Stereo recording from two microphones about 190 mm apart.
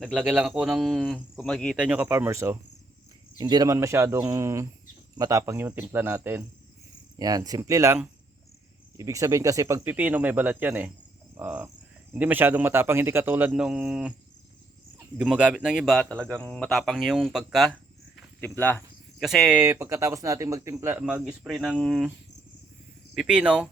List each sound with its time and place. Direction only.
0.0 s speech: 5° right (ahead or behind)
1.8 s speech: 5° right (ahead or behind)
15.2 s speech: 5° right (ahead or behind)
18.3 s speech: 10° left (ahead or behind)
19.2 s speech: centre (ahead or behind)
21.0 s speech: 5° right (ahead or behind)
23.1 s speech: 5° right (ahead or behind)